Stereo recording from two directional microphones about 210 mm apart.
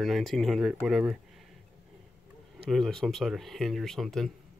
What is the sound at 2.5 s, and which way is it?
Speech, centre (ahead or behind).